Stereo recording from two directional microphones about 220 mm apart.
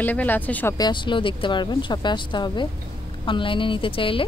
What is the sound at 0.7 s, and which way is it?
A woman's voice, 20° left (ahead or behind).